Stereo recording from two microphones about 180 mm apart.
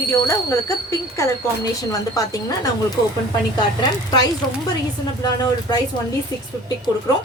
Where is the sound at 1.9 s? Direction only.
20° left (ahead or behind).